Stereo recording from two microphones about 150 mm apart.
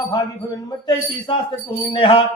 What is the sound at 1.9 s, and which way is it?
Speech, 35° left (ahead or behind).